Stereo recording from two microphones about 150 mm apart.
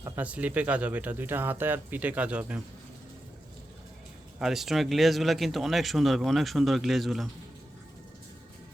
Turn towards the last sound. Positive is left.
turn(degrees=0)  # may be behind; listen again after turning